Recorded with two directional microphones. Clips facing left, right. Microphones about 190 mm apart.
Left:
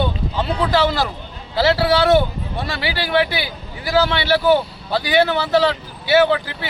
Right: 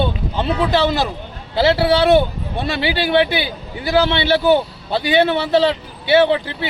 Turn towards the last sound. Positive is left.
turn(degrees=-25)  # may be behind; listen again after turning